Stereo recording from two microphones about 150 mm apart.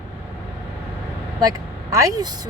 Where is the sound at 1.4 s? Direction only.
25° right (ahead or behind).